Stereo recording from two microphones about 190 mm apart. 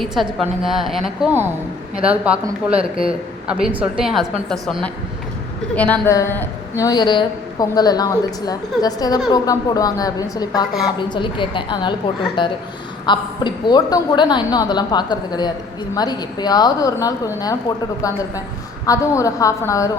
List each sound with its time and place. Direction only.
0.0 s a woman's voice: centre (ahead or behind); by 19.9 s 15° left (ahead or behind)